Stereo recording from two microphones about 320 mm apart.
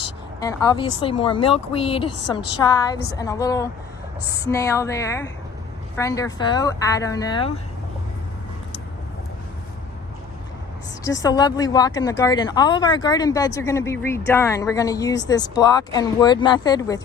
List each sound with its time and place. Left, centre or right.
0.3 s speech: centre
2.0 s a woman's voice: left
2.3 s speech: centre
11.0 s speech: centre